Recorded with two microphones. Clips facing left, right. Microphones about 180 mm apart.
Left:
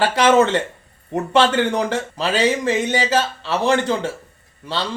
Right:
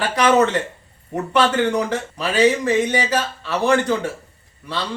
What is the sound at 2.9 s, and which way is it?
A man's voice, 25° left (ahead or behind).